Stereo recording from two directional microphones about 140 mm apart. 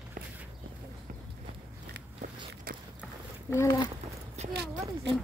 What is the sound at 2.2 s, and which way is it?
Biting, 90° right.